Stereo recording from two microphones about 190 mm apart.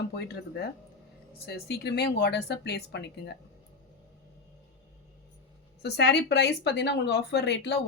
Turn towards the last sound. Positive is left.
turn(degrees=60)  # may be behind; listen again after turning